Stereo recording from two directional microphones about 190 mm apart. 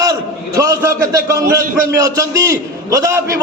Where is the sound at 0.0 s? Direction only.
15° right (ahead or behind).